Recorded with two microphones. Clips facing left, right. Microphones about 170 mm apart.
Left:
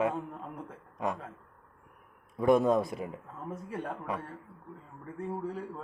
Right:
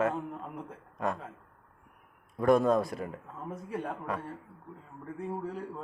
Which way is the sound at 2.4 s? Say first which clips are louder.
Even; 20° left (ahead or behind).